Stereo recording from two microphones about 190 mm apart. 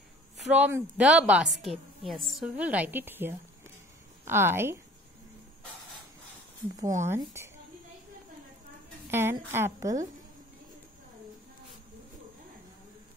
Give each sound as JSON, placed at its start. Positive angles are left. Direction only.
{"t": 0.4, "sound": "a woman's voice", "side_deg": -5}
{"t": 6.8, "sound": "a woman's voice", "side_deg": -15}
{"t": 9.1, "sound": "a woman's voice", "side_deg": -10}